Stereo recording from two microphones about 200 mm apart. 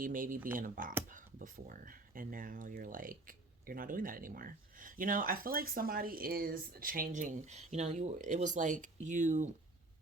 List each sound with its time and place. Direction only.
0.0 s speech: 45° right (ahead or behind)